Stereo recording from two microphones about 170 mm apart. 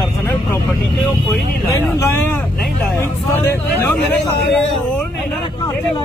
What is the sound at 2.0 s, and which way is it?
Speech, 15° left (ahead or behind).